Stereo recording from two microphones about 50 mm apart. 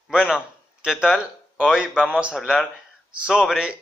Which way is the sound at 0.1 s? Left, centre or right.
Centre.